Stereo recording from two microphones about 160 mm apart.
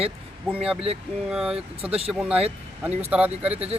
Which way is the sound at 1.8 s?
35° right (ahead or behind).